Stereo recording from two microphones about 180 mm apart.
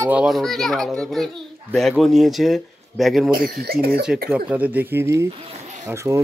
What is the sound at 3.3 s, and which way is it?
Speech, 55° right (ahead or behind).